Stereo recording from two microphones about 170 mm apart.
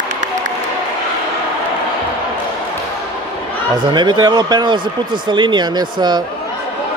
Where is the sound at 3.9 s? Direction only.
25° right (ahead or behind).